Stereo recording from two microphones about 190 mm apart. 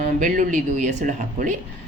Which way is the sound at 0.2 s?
40° right (ahead or behind).